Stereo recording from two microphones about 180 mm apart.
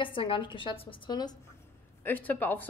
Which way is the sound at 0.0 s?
30° left (ahead or behind).